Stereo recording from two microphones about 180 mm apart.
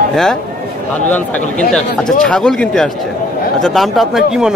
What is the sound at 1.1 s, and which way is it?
Speech, 5° left (ahead or behind).